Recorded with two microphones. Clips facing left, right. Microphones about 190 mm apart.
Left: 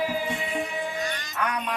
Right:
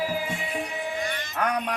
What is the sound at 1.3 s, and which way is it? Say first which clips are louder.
Music: right 4 dB; 45° right (ahead or behind).